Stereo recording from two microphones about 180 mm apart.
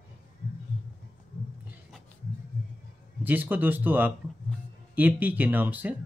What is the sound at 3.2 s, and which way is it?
Speech, 10° right (ahead or behind).